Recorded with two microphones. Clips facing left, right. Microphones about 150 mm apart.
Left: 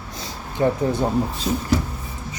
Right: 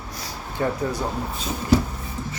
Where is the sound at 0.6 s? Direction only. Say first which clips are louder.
Left 5 dB; 25° left (ahead or behind).